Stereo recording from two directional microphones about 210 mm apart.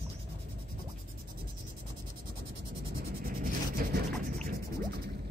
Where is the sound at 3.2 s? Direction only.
45° right (ahead or behind).